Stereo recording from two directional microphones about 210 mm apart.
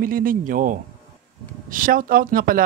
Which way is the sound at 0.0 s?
40° right (ahead or behind).